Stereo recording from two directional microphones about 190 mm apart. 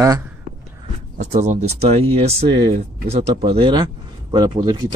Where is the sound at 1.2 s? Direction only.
35° right (ahead or behind).